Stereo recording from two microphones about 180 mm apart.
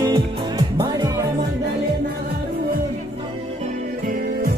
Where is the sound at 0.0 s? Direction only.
25° right (ahead or behind).